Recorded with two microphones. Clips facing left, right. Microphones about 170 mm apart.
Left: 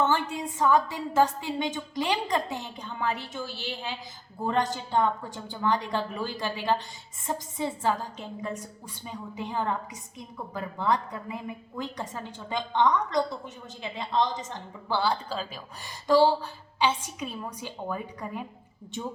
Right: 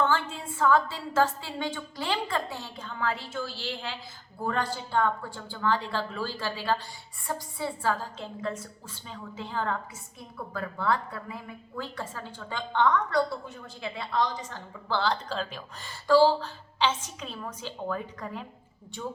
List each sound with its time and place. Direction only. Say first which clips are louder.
0.0 s a woman's voice: left 1 dB; 15° left (ahead or behind)